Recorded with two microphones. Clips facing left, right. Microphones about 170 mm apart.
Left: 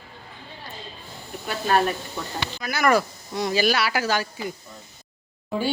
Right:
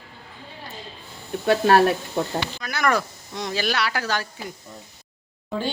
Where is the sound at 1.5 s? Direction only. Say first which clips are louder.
Right 6 dB; 70° right (ahead or behind).